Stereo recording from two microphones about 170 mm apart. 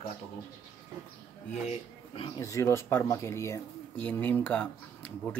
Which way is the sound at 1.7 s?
30° left (ahead or behind).